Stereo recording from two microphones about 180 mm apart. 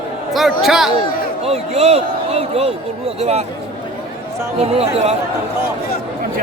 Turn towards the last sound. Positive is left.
turn(degrees=-35)  # may be behind; listen again after turning